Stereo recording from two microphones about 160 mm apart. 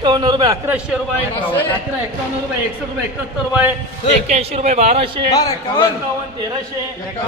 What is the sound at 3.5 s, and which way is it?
Speech, 10° right (ahead or behind).